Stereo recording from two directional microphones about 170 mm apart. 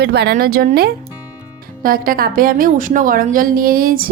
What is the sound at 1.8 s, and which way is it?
A woman's voice, 55° right (ahead or behind).